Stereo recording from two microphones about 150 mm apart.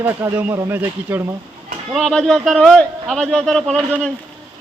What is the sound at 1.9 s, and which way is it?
A man's voice, centre (ahead or behind).